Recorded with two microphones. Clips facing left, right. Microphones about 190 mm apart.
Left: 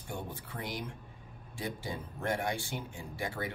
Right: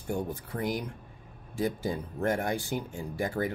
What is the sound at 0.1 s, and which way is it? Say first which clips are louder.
Speech: right 8 dB; 45° right (ahead or behind).